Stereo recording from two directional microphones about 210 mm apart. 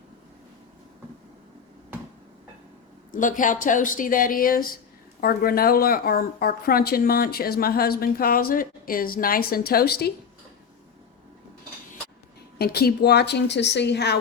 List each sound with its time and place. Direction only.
3.1 s speech: 40° left (ahead or behind)
12.5 s speech: 50° left (ahead or behind)